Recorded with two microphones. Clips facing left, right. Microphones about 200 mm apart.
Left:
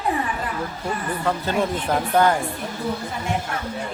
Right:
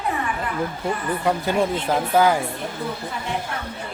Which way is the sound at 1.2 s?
15° right (ahead or behind).